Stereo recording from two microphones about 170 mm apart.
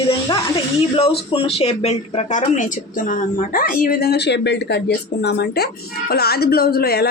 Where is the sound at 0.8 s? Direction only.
35° left (ahead or behind).